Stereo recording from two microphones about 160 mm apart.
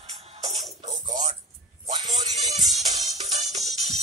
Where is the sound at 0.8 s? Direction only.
50° right (ahead or behind).